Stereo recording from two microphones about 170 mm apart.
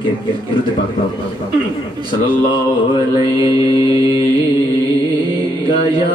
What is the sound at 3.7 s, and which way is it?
Mantra, 30° left (ahead or behind).